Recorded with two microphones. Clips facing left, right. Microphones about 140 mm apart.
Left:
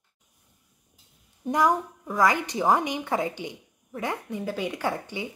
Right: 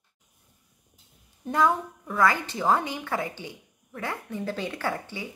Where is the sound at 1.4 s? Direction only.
15° left (ahead or behind).